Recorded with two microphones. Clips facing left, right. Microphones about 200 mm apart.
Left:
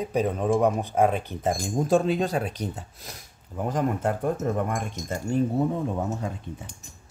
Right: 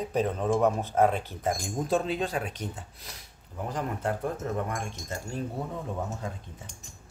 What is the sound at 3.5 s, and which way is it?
Speech, 75° left (ahead or behind).